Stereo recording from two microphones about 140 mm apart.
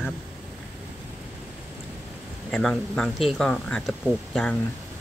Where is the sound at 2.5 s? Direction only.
5° left (ahead or behind).